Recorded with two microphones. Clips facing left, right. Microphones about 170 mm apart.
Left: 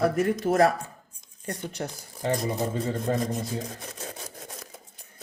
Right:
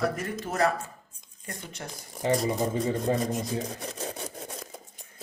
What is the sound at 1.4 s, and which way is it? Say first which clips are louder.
Speech: left 7 dB; 35° left (ahead or behind).